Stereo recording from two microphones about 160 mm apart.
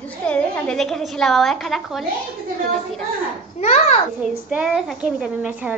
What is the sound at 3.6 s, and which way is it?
Speech, 45° left (ahead or behind).